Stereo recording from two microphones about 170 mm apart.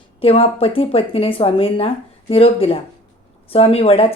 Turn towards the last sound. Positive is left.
turn(degrees=35)  # may be behind; listen again after turning